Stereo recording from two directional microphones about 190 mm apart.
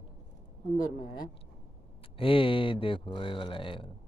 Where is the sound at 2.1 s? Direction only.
30° left (ahead or behind).